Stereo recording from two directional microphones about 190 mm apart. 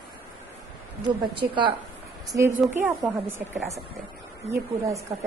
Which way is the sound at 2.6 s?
10° right (ahead or behind).